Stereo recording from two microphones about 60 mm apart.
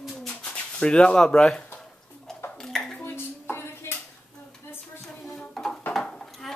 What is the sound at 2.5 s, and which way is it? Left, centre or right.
Dishes, centre.